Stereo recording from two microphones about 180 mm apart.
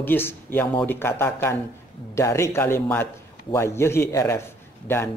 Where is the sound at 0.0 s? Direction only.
10° left (ahead or behind).